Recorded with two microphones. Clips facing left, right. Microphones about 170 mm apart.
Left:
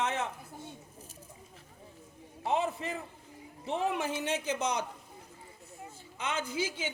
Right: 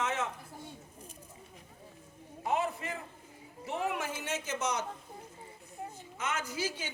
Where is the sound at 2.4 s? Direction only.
25° left (ahead or behind).